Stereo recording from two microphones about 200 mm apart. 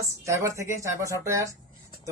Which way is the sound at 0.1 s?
15° right (ahead or behind).